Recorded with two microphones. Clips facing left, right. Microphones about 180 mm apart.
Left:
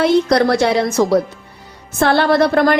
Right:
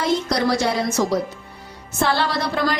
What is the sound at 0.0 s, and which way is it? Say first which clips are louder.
A woman's voice: left 7 dB; 65° left (ahead or behind).